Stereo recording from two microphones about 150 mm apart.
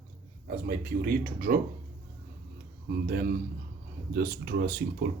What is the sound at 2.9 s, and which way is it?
A man's voice, 85° right.